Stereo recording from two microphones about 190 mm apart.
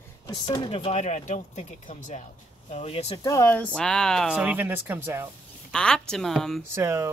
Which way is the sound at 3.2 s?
15° left (ahead or behind).